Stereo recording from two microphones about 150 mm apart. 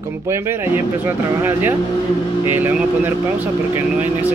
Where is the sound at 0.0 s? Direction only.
20° right (ahead or behind).